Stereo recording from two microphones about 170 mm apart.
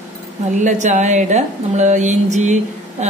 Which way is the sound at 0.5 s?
45° right (ahead or behind).